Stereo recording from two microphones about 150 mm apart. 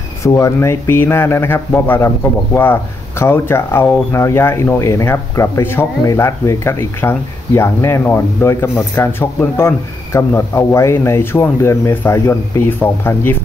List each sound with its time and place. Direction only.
0.2 s speech: 20° left (ahead or behind)